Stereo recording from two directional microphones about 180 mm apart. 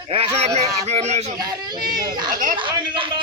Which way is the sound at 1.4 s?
20° right (ahead or behind).